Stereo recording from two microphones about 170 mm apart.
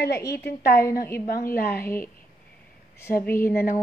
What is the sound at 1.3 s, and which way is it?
Speech, 60° left (ahead or behind).